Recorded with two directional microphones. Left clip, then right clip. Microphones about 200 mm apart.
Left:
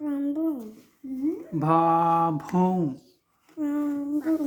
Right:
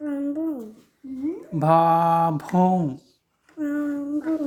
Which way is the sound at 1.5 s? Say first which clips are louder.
Right 4 dB; 40° right (ahead or behind).